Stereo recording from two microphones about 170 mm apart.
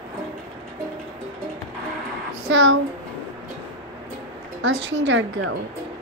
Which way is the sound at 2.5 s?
90° right.